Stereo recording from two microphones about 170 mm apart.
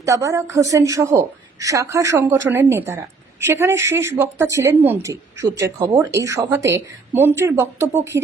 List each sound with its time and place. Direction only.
0.0 s a woman's voice: 20° right (ahead or behind)